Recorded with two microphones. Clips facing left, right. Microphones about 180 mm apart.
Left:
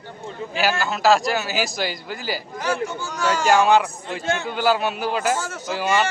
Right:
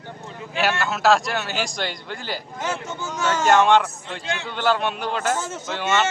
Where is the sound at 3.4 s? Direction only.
5° left (ahead or behind).